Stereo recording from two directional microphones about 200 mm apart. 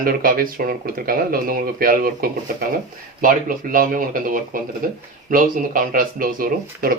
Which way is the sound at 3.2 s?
45° right (ahead or behind).